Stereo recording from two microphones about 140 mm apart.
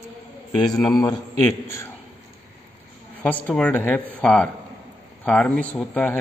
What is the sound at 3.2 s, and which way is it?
A man's voice, 10° left (ahead or behind).